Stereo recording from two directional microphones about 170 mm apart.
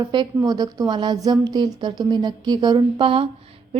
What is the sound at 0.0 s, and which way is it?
A woman's voice, 25° right (ahead or behind).